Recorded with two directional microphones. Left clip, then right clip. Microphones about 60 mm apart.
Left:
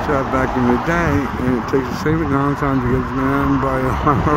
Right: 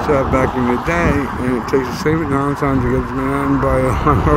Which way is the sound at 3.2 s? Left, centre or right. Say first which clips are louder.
Left 1 dB; centre.